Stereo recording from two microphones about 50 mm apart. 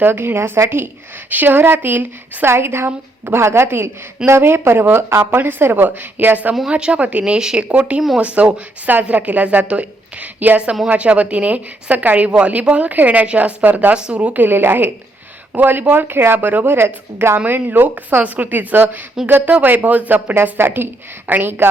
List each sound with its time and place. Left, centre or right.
0.0 s a woman's voice: right
1.3 s a woman's voice: right
2.5 s a woman's voice: right
5.4 s a woman's voice: right
6.7 s speech: right
8.9 s a woman's voice: right
13.9 s speech: right
14.4 s a woman's voice: right
17.4 s a woman's voice: right
20.3 s a woman's voice: right